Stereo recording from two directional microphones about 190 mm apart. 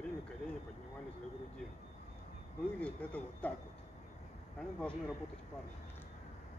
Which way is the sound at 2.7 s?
5° left (ahead or behind).